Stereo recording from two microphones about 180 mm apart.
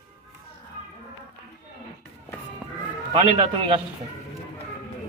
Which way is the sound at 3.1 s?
30° right (ahead or behind).